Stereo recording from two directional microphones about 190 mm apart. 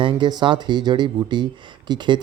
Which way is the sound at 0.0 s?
25° right (ahead or behind).